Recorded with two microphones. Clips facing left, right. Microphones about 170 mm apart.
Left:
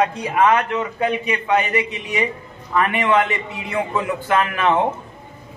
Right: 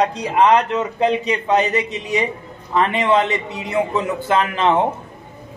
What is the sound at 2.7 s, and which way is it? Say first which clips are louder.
A man's voice: right 1 dB; 25° right (ahead or behind).